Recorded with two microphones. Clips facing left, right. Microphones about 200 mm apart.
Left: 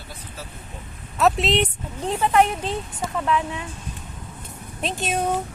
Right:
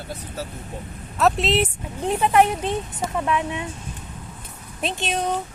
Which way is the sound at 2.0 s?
15° right (ahead or behind).